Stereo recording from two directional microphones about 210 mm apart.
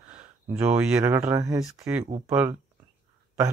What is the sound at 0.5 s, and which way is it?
Speech, 10° right (ahead or behind).